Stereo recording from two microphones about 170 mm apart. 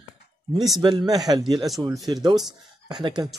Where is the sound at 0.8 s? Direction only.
25° right (ahead or behind).